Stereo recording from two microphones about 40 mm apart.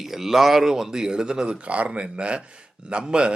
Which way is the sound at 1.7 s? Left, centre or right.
Right.